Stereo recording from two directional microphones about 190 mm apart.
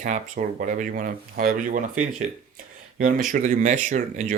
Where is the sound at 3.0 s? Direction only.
45° right (ahead or behind).